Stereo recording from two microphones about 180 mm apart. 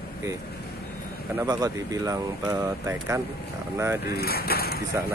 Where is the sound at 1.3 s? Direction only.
20° right (ahead or behind).